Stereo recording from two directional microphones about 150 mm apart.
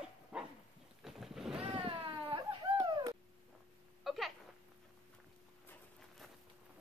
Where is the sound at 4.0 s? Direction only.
Centre (ahead or behind).